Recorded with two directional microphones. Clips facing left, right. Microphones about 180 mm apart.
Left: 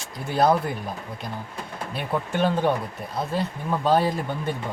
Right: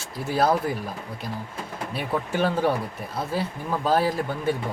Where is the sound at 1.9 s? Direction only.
5° right (ahead or behind).